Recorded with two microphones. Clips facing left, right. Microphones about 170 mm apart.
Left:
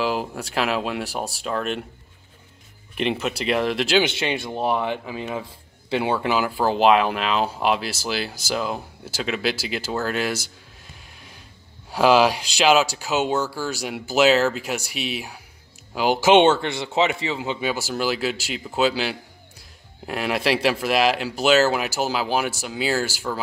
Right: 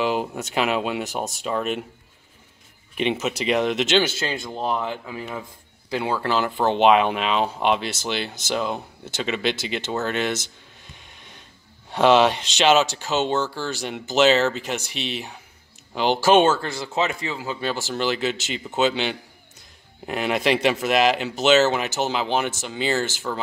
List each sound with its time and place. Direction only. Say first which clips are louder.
0.0 s speech: right 1 dB; centre (ahead or behind)
3.0 s speech: even; centre (ahead or behind)
4.0 s speech: left 2 dB; 20° left (ahead or behind)
6.2 s speech: even; 5° left (ahead or behind)
11.0 s music: left 1 dB; 5° left (ahead or behind)
11.9 s speech: even; 5° left (ahead or behind); by 17.6 s 25° left (ahead or behind)
17.6 s speech: left 1 dB; 10° left (ahead or behind)